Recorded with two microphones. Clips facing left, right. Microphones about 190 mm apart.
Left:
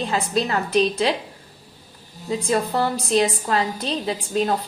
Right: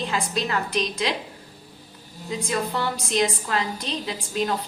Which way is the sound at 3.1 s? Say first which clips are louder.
Left 3 dB; 35° left (ahead or behind).